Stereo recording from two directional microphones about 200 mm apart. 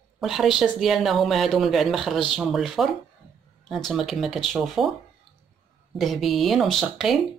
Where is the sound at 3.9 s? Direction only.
Centre (ahead or behind).